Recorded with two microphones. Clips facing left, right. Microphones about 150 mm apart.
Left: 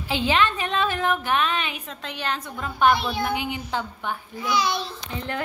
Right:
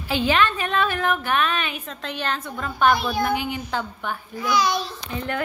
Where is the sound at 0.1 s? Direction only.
20° left (ahead or behind).